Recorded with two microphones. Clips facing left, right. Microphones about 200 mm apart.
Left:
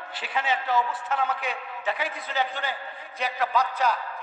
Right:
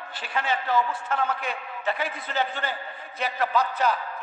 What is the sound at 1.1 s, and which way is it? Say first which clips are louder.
Speech: even; centre (ahead or behind).